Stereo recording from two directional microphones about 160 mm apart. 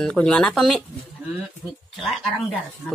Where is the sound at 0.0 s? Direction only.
5° left (ahead or behind).